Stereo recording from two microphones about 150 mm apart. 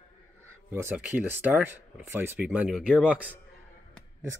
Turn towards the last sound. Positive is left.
turn(degrees=-10)  # may be behind; listen again after turning